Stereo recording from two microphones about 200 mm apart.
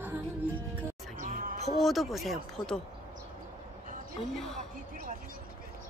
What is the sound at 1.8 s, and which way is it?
Speech, centre (ahead or behind).